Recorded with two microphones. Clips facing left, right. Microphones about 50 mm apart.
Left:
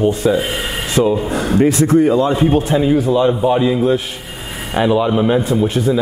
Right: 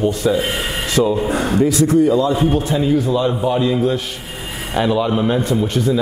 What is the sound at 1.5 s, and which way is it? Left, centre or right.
Speech, left.